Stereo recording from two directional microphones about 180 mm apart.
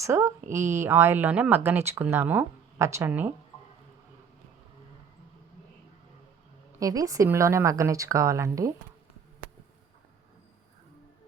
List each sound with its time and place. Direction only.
0.0 s speech: 15° right (ahead or behind)
6.7 s speech: 20° right (ahead or behind)